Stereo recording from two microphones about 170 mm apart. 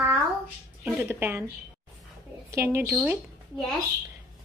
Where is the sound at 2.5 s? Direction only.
15° right (ahead or behind).